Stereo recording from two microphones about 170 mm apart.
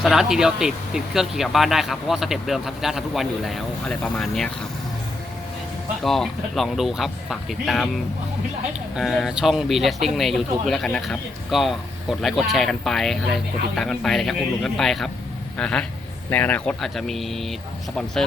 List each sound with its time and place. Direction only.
0.0 s speech: centre (ahead or behind)
6.0 s speech: centre (ahead or behind)
9.0 s speech: centre (ahead or behind)